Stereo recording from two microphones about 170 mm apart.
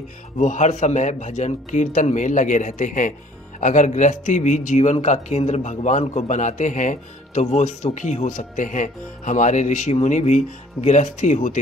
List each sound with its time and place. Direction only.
0.4 s speech: 45° left (ahead or behind)